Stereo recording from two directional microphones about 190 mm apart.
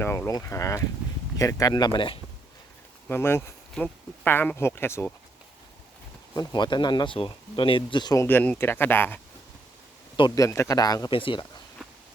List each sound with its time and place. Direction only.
0.0 s speech: 10° left (ahead or behind)
3.1 s speech: 10° left (ahead or behind)
6.3 s speech: 20° left (ahead or behind)
10.2 s speech: 20° left (ahead or behind)